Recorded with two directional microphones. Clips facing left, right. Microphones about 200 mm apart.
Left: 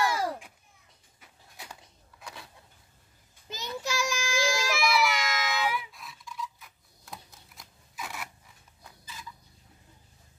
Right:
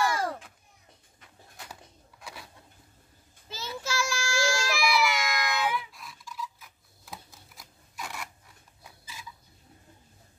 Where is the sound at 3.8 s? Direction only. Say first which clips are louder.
Even; 15° left (ahead or behind).